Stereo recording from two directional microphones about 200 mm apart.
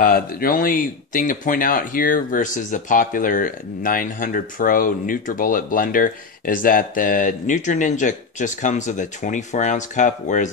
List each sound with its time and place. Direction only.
0.0 s speech: 45° left (ahead or behind)